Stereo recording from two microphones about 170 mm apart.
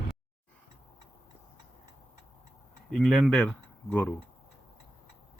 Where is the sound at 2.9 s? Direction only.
Centre (ahead or behind).